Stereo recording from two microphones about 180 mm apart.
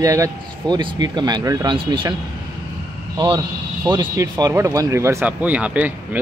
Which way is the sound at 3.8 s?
20° right (ahead or behind).